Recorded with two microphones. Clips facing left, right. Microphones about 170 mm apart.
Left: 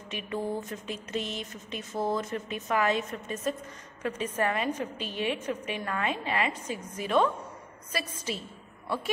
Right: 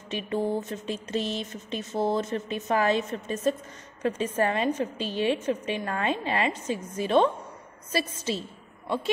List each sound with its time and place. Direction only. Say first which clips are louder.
0.1 s a woman's voice: right 5 dB; 30° right (ahead or behind)